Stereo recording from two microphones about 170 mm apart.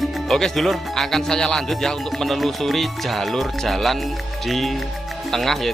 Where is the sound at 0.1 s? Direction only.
Centre (ahead or behind).